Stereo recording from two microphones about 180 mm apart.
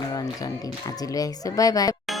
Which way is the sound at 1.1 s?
20° left (ahead or behind).